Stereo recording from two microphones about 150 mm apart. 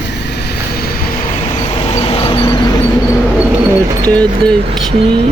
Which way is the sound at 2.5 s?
25° left (ahead or behind).